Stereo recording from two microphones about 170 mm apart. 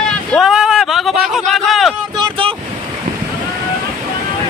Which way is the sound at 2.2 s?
30° right (ahead or behind).